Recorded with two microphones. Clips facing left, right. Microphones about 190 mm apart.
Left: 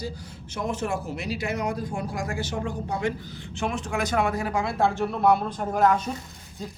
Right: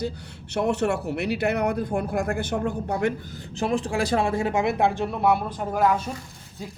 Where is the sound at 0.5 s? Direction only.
70° right (ahead or behind).